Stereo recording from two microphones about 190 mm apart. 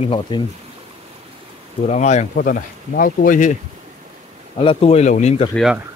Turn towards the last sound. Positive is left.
turn(degrees=0)  # may be behind; listen again after turning